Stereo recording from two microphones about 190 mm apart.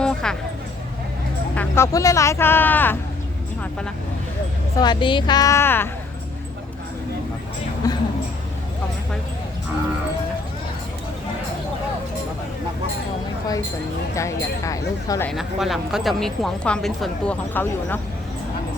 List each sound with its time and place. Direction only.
0.0 s a sound: 5° left (ahead or behind)
1.5 s speech: 15° left (ahead or behind)
4.8 s a woman's voice: 25° left (ahead or behind)
7.8 s speech: 20° left (ahead or behind)
14.2 s speech: 15° left (ahead or behind)
15.3 s speech: centre (ahead or behind)